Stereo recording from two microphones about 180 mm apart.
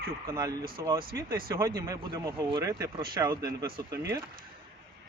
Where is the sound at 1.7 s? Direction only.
20° right (ahead or behind).